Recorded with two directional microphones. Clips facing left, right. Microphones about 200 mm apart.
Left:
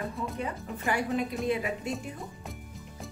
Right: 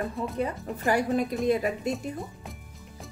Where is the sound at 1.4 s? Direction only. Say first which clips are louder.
Right 5 dB; 40° right (ahead or behind).